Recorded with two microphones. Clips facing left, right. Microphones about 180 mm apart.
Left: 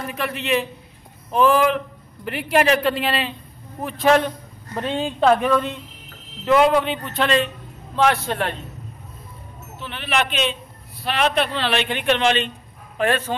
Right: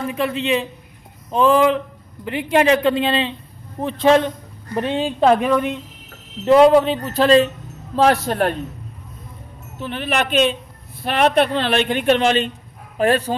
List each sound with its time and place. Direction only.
0.2 s speech: 20° right (ahead or behind)
2.6 s speech: 20° right (ahead or behind)
6.4 s speech: 35° right (ahead or behind)
9.8 s a woman's voice: 45° right (ahead or behind)